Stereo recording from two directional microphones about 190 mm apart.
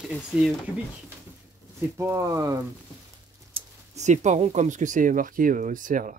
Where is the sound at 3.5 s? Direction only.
35° right (ahead or behind).